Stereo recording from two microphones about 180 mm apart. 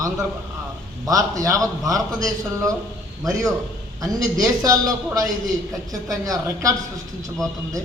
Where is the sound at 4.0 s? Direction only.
20° right (ahead or behind).